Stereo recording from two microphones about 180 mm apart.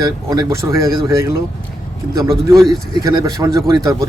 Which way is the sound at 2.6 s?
20° right (ahead or behind).